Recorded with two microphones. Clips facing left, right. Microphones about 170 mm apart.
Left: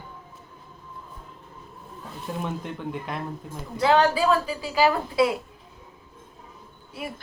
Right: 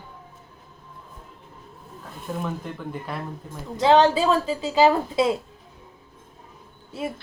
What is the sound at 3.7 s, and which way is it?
A woman's voice, 20° right (ahead or behind).